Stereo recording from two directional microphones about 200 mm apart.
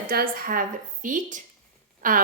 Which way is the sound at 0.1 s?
45° right (ahead or behind).